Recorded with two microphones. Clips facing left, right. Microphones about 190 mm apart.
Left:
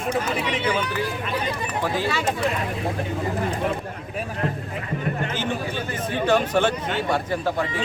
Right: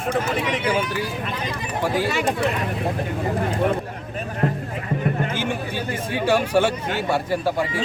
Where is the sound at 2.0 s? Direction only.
15° right (ahead or behind).